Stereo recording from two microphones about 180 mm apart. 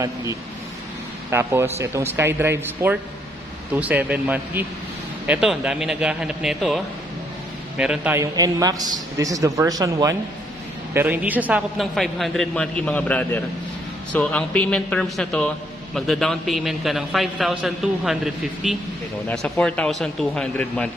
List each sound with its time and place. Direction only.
0.0 s a man's voice: 15° right (ahead or behind); by 18.8 s centre (ahead or behind)
19.2 s a man's voice: 10° left (ahead or behind)